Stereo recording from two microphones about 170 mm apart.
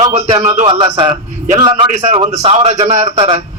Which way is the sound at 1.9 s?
40° right (ahead or behind).